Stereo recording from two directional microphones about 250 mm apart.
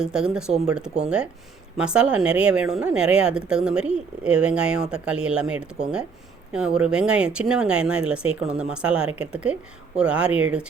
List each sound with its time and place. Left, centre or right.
0.0 s speech: centre